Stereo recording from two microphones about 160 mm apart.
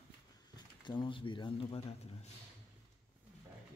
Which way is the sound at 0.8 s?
30° left (ahead or behind).